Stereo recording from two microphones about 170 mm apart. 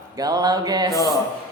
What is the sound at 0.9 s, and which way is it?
Speech, 20° left (ahead or behind).